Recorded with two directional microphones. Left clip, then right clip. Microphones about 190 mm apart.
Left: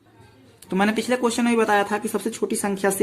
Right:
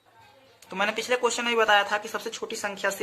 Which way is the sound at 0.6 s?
20° left (ahead or behind).